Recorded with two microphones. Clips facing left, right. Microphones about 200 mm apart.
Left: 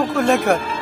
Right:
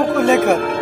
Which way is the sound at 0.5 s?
55° right (ahead or behind).